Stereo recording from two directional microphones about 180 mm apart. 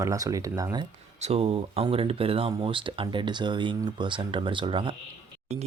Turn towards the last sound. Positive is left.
turn(degrees=-25)  # may be behind; listen again after turning